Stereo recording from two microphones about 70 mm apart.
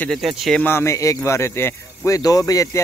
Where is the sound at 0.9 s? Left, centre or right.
Left.